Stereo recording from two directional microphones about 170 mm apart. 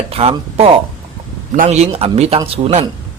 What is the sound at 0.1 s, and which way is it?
Speech, 35° right (ahead or behind).